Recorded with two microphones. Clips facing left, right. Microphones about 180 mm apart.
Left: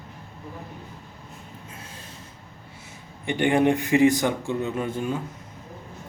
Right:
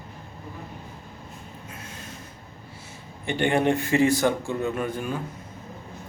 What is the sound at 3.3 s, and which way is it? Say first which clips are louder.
A man's voice: left 2 dB; 15° left (ahead or behind).